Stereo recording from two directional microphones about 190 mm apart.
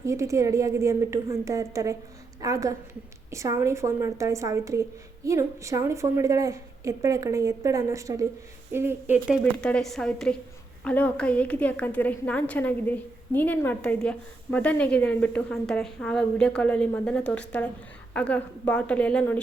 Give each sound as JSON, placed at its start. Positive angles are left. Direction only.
{"t": 0.0, "sound": "a woman's voice", "side_deg": -15}